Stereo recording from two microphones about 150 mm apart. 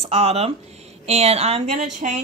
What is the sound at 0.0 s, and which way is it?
A woman's voice, 40° right (ahead or behind).